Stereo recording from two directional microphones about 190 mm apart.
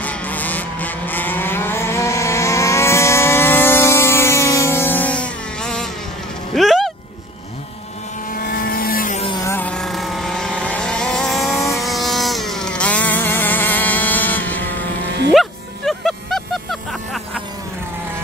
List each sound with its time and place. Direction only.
0.0 s vehicle: 10° left (ahead or behind)
6.5 s a sound: centre (ahead or behind)
8.4 s vehicle: 50° left (ahead or behind)
9.2 s vehicle: 25° left (ahead or behind)
9.5 s vehicle: 5° left (ahead or behind)
15.3 s music: centre (ahead or behind)